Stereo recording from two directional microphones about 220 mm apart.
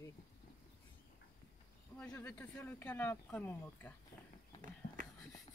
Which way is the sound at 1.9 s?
5° left (ahead or behind).